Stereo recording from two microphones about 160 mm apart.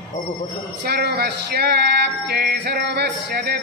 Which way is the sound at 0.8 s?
85° right.